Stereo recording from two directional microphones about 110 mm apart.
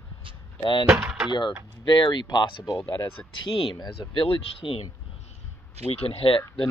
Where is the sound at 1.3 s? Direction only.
45° left (ahead or behind).